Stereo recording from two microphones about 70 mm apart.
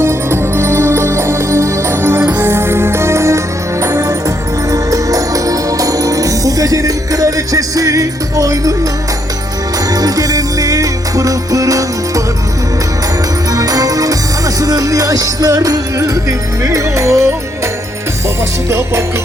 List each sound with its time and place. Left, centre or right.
0.0 s music: right
4.7 s music: right
10.0 s music: right
13.6 s music: right